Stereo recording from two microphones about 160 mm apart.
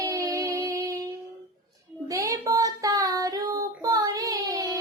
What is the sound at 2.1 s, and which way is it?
Child singing, 20° right (ahead or behind).